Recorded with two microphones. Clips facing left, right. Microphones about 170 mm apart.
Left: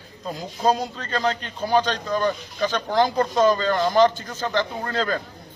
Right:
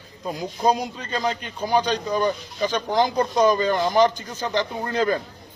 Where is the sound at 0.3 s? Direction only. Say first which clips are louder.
Even; 15° right (ahead or behind).